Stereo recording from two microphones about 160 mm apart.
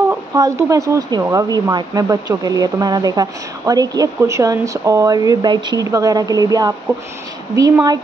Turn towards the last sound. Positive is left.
turn(degrees=-25)  # may be behind; listen again after turning